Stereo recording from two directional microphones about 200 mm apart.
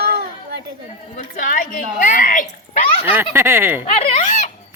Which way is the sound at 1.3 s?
40° left (ahead or behind).